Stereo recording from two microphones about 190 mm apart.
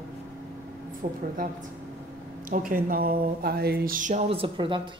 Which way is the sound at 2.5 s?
45° right (ahead or behind).